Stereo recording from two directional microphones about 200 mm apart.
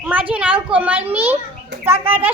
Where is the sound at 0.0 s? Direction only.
10° right (ahead or behind).